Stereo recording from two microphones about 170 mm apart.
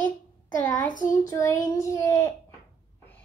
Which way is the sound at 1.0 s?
20° left (ahead or behind).